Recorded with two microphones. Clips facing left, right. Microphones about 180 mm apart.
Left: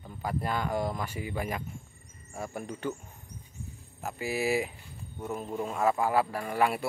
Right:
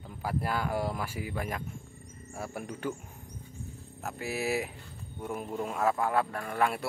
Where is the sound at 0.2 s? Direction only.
5° right (ahead or behind).